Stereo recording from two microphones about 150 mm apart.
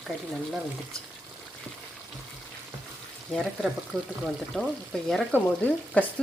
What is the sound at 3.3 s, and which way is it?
Speech, centre (ahead or behind).